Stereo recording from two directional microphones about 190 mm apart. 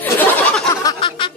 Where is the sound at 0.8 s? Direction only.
20° left (ahead or behind).